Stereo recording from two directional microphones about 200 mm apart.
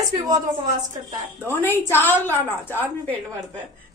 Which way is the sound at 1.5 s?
10° left (ahead or behind).